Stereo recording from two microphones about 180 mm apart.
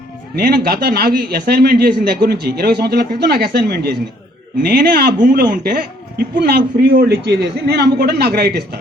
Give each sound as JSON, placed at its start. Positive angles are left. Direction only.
{"t": 0.3, "sound": "a man's voice", "side_deg": -55}